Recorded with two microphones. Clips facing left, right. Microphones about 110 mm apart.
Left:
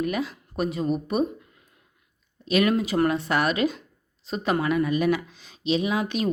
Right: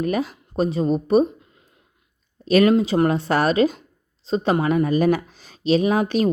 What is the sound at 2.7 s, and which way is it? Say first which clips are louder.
A woman's voice: right 4 dB; 25° right (ahead or behind).